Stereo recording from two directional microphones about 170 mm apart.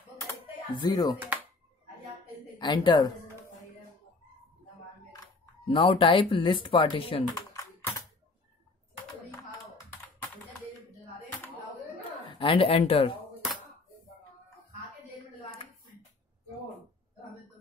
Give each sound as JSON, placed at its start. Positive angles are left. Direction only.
{"t": 0.7, "sound": "a woman's voice", "side_deg": 25}
{"t": 1.2, "sound": "music", "side_deg": -10}
{"t": 2.6, "sound": "a woman's voice", "side_deg": 25}
{"t": 5.7, "sound": "speech", "side_deg": 30}
{"t": 7.3, "sound": "typing", "side_deg": 20}
{"t": 12.3, "sound": "speech", "side_deg": 30}